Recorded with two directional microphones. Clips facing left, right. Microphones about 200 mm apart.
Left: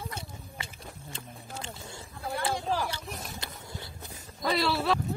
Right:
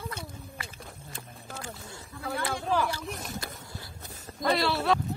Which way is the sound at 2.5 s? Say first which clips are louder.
Right 2 dB; 60° right (ahead or behind).